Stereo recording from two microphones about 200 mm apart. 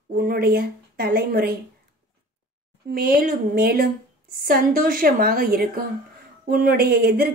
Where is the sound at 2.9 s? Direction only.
45° right (ahead or behind).